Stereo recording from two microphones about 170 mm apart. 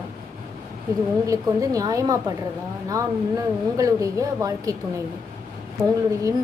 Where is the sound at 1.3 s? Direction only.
20° right (ahead or behind).